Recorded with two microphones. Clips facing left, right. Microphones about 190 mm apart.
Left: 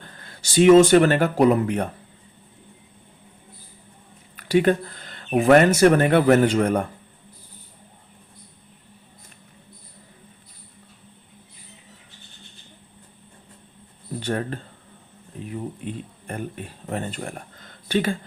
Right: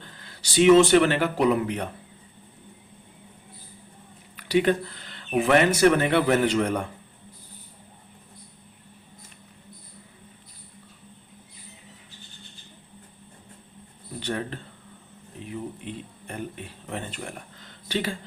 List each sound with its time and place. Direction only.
0.0 s speech: 50° left (ahead or behind)
4.4 s speech: 50° left (ahead or behind)
14.2 s speech: 45° left (ahead or behind)
15.9 s speech: 45° left (ahead or behind)